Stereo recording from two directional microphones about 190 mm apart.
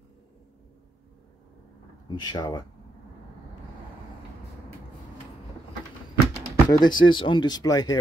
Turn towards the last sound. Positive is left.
turn(degrees=20)  # may be behind; listen again after turning